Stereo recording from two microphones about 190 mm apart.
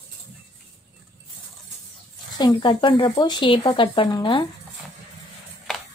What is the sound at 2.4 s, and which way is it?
Speech, 25° left (ahead or behind).